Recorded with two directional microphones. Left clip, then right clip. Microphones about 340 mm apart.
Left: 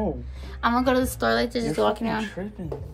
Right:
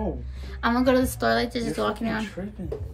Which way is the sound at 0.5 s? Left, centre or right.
Centre.